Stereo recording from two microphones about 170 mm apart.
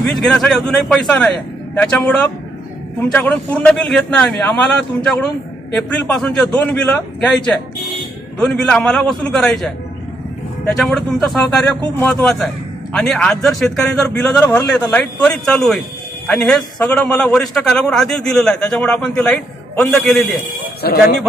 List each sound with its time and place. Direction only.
0.1 s a man's voice: 5° left (ahead or behind)
5.8 s a man's voice: 5° left (ahead or behind)
10.8 s a man's voice: 5° left (ahead or behind)
20.8 s speech: 65° left (ahead or behind)